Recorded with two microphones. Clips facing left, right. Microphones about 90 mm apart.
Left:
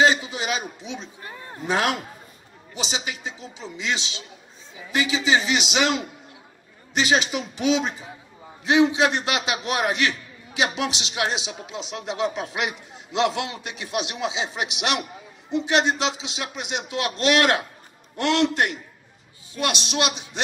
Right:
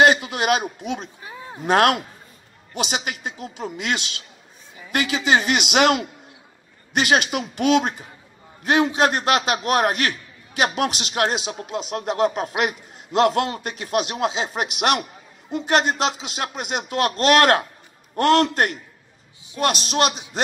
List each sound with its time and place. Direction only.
0.0 s a man's voice: 60° right (ahead or behind)
1.2 s a sound: 10° right (ahead or behind)
1.7 s a man's voice: 60° right (ahead or behind); by 20.2 s 45° right (ahead or behind)